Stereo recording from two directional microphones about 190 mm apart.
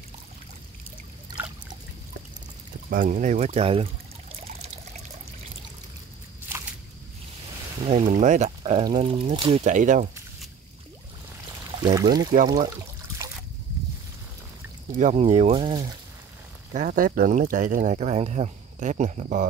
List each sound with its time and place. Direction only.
2.9 s speech: 45° right (ahead or behind)
4.5 s water: 35° right (ahead or behind)
7.8 s speech: 35° right (ahead or behind)
8.8 s speech: 25° right (ahead or behind); by 10.0 s 40° right (ahead or behind)
11.8 s speech: 20° right (ahead or behind)
12.4 s trickle: 20° right (ahead or behind)
14.9 s speech: 40° right (ahead or behind)
16.7 s speech: 45° right (ahead or behind)